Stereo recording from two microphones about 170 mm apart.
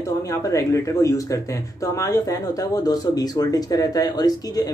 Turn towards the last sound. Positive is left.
turn(degrees=25)  # may be behind; listen again after turning